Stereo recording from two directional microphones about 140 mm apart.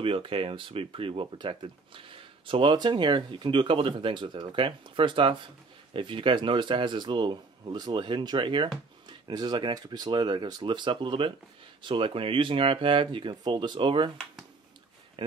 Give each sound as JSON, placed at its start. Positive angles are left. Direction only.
{"t": 0.0, "sound": "speech", "side_deg": -40}
{"t": 15.2, "sound": "speech", "side_deg": -35}